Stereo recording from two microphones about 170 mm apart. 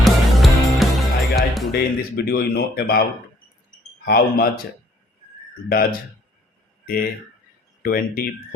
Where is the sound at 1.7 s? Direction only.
65° left (ahead or behind).